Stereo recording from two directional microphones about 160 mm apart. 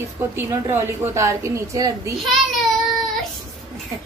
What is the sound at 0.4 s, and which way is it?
A woman's voice, 15° right (ahead or behind).